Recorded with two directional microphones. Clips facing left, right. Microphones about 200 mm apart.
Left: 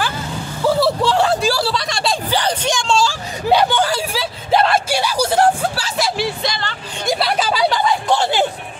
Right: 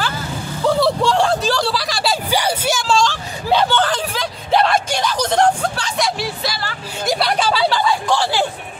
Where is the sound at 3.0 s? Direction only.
10° left (ahead or behind).